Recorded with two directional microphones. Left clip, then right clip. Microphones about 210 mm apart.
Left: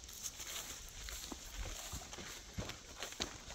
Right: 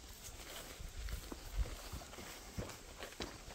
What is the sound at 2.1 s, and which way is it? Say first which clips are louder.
Horse: left 1 dB; 55° left (ahead or behind).